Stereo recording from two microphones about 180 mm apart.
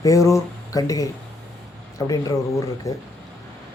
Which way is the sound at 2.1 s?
20° left (ahead or behind).